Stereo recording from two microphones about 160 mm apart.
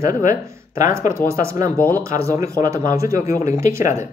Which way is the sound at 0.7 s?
20° right (ahead or behind).